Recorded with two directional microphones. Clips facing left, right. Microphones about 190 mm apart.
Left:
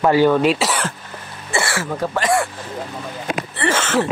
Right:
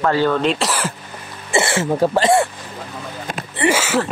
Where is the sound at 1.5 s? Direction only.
20° right (ahead or behind).